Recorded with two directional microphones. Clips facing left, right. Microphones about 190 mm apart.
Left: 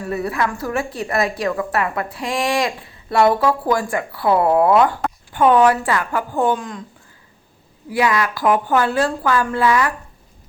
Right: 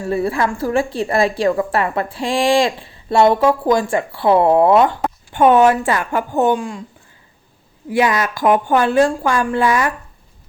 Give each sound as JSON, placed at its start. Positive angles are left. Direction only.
{"t": 0.0, "sound": "a woman's voice", "side_deg": -30}
{"t": 6.6, "sound": "speech", "side_deg": -10}
{"t": 7.9, "sound": "a woman's voice", "side_deg": -20}